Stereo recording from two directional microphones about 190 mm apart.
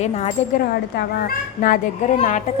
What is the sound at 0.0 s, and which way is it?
Speech, 35° left (ahead or behind).